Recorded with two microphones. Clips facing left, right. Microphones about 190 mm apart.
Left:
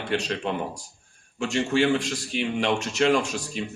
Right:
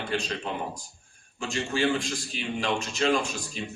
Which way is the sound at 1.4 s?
70° left (ahead or behind).